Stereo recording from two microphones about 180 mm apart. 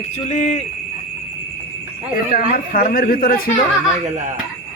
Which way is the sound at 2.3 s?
55° left (ahead or behind).